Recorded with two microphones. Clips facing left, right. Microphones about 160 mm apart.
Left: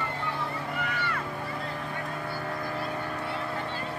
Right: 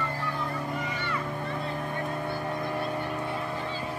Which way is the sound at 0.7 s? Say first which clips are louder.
Even; 65° left (ahead or behind).